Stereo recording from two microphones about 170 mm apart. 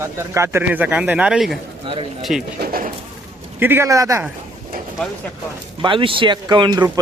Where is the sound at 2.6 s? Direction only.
60° right (ahead or behind).